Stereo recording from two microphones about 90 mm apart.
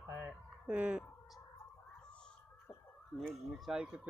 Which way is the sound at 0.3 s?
15° right (ahead or behind).